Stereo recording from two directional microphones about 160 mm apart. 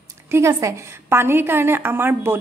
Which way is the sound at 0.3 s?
20° right (ahead or behind).